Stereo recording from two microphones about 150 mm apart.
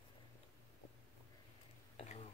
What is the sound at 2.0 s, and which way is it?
Whispering, 45° left (ahead or behind).